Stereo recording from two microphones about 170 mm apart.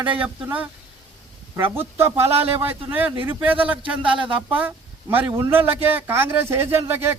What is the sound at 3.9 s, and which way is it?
Speech, 30° right (ahead or behind).